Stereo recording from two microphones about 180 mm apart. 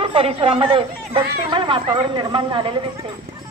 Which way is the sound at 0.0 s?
30° right (ahead or behind).